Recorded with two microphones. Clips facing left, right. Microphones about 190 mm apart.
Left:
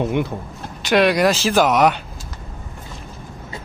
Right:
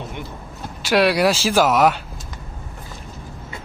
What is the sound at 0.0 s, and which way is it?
Speech, 60° left (ahead or behind).